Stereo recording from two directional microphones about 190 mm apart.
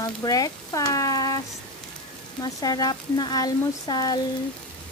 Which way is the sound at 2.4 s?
20° left (ahead or behind).